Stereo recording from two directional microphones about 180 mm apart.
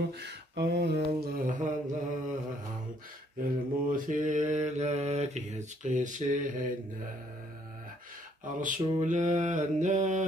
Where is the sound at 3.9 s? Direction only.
45° right (ahead or behind).